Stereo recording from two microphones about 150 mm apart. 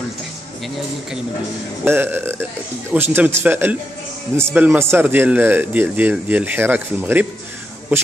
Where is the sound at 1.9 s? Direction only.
15° right (ahead or behind).